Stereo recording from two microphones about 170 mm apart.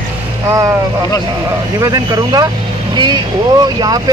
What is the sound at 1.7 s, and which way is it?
A man's voice, 20° right (ahead or behind).